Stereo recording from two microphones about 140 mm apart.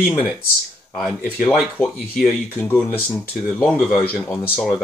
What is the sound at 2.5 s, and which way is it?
Speech, 15° left (ahead or behind).